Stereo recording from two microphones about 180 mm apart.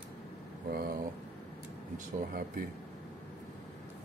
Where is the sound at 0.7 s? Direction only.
55° right (ahead or behind).